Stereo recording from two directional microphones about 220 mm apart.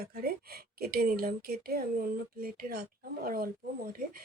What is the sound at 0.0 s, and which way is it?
Speech, 45° right (ahead or behind).